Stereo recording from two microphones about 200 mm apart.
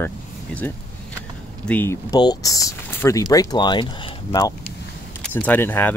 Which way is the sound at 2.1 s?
20° left (ahead or behind).